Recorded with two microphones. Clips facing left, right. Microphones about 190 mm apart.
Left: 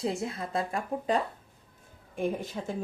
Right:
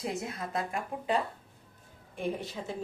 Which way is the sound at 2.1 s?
45° left (ahead or behind).